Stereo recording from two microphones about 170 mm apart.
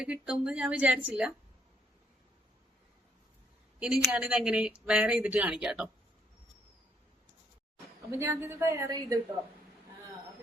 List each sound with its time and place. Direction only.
0.0 s a woman's voice: 5° right (ahead or behind)
3.8 s a woman's voice: 5° right (ahead or behind)
8.1 s a woman's voice: 15° right (ahead or behind)